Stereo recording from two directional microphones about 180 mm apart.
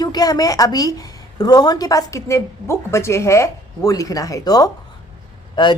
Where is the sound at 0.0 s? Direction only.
20° left (ahead or behind).